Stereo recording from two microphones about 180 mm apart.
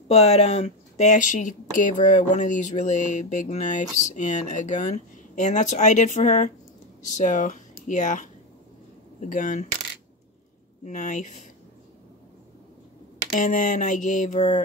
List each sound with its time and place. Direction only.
0.1 s speech: 35° left (ahead or behind)
10.9 s speech: 45° left (ahead or behind)
13.3 s speech: 45° left (ahead or behind)